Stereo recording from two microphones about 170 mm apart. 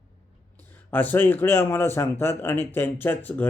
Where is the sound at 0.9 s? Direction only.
10° left (ahead or behind).